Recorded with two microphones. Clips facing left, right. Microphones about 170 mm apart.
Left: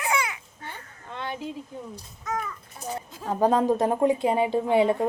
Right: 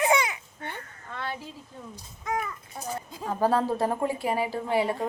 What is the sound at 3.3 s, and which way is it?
A woman's voice, 20° left (ahead or behind).